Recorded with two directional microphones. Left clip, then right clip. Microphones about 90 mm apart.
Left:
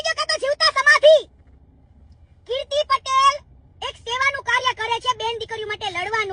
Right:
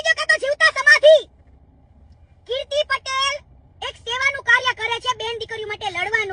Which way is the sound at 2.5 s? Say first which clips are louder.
Left 1 dB; 20° left (ahead or behind).